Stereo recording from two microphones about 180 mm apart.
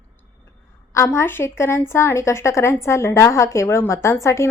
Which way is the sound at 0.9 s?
15° left (ahead or behind).